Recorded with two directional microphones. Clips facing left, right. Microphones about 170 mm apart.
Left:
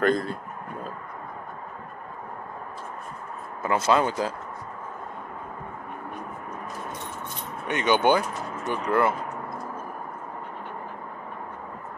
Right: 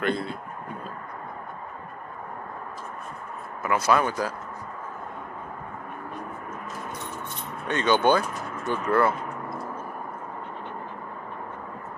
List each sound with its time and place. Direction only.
0.0 s a man's voice: 40° left (ahead or behind)
3.6 s speech: 25° left (ahead or behind)
7.6 s speech: 15° left (ahead or behind)